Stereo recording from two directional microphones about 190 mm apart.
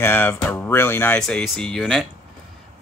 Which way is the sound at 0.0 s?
10° left (ahead or behind).